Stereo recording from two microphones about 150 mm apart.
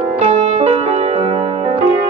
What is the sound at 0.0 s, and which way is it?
Music, 40° right (ahead or behind).